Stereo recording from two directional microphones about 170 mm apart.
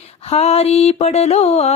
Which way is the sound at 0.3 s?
40° left (ahead or behind).